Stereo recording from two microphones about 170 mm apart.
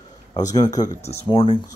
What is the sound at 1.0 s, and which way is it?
Speech, 35° left (ahead or behind).